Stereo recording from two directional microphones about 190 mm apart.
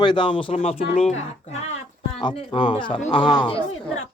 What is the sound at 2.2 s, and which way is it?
Speech, 25° left (ahead or behind).